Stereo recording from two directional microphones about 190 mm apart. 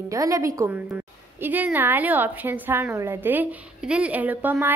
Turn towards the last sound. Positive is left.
turn(degrees=-10)  # may be behind; listen again after turning